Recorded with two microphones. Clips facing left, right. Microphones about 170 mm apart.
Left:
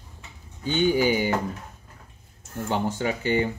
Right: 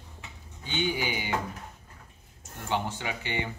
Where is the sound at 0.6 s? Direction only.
45° left (ahead or behind).